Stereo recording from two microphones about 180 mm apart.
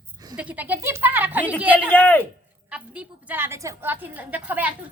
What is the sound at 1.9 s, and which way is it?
Speech, 10° left (ahead or behind).